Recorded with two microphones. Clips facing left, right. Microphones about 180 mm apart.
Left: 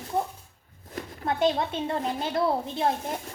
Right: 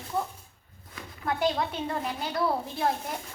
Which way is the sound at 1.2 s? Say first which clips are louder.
Left 3 dB; 25° left (ahead or behind).